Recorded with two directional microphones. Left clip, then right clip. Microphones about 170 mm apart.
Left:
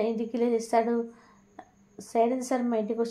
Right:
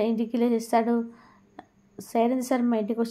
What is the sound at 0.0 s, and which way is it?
A woman's voice, 30° right (ahead or behind).